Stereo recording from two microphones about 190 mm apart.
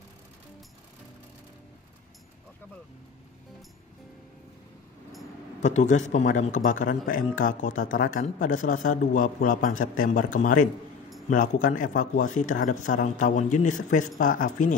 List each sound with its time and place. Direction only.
5.6 s a man's voice: 40° left (ahead or behind)